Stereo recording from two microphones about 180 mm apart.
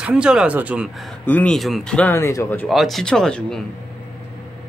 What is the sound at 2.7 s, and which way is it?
Speech, centre (ahead or behind).